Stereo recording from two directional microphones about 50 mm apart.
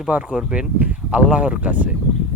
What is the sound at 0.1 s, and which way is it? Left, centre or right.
Speech, right.